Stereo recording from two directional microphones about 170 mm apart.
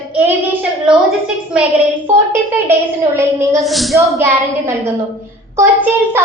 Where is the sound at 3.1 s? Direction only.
15° right (ahead or behind).